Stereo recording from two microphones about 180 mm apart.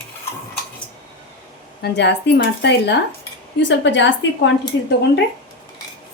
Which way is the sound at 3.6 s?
85° left.